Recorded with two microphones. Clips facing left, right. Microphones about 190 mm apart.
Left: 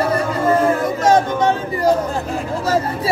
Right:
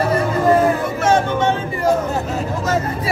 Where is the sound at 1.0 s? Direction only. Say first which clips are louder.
Left 1 dB; 40° left (ahead or behind).